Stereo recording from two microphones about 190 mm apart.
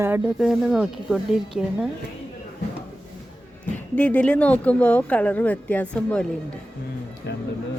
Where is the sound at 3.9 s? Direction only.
10° left (ahead or behind).